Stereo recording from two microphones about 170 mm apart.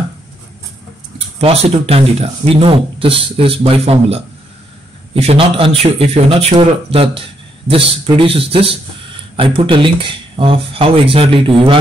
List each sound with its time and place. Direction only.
1.4 s speech: 35° right (ahead or behind)